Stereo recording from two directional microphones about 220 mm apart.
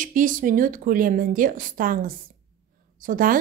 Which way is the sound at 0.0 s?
35° right (ahead or behind).